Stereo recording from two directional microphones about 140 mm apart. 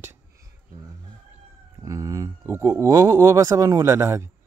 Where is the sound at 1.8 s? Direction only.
25° right (ahead or behind).